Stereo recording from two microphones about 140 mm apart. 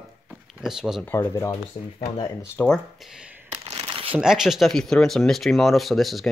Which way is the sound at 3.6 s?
35° right (ahead or behind).